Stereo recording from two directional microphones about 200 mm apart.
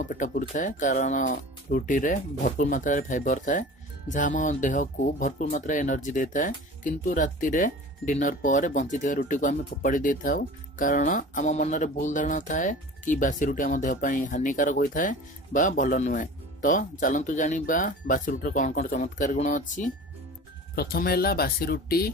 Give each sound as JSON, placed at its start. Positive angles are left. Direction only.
{"t": 0.0, "sound": "speech", "side_deg": 40}
{"t": 20.7, "sound": "speech", "side_deg": 50}